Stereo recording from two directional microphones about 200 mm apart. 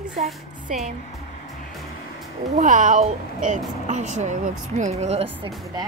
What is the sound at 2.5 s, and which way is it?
Speech, 40° right (ahead or behind).